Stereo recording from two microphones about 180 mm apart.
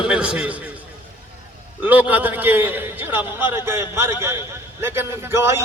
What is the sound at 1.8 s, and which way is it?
A man's voice, 10° right (ahead or behind).